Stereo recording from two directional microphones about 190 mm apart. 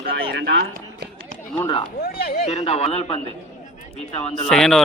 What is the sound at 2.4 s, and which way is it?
Speech, 35° left (ahead or behind).